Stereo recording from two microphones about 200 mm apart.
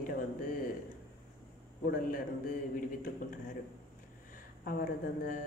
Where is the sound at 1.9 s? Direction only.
45° left (ahead or behind).